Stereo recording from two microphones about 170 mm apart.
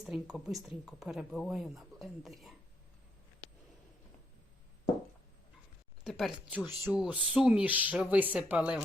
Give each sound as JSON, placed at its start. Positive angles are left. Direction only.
{"t": 0.0, "sound": "speech", "side_deg": 0}
{"t": 6.1, "sound": "speech", "side_deg": 0}